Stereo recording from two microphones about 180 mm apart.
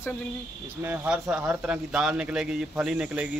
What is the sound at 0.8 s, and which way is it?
Speech, 10° right (ahead or behind).